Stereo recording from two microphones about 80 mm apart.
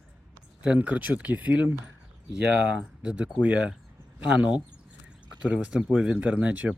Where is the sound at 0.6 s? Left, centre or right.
Centre.